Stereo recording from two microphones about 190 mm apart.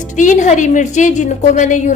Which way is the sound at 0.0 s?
40° left (ahead or behind).